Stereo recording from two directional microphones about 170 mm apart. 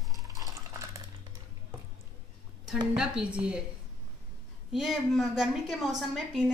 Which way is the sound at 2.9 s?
5° right (ahead or behind).